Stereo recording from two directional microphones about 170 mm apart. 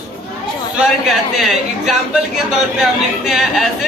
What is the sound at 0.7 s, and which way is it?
A woman's voice, centre (ahead or behind).